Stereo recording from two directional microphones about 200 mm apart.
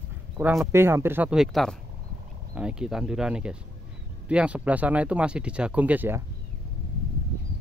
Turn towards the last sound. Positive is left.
turn(degrees=-10)  # may be behind; listen again after turning